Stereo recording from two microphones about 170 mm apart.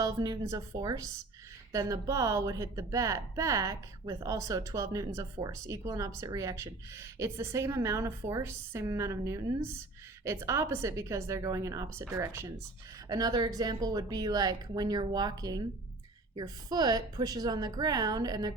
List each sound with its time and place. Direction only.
0.0 s a woman's voice: 20° right (ahead or behind)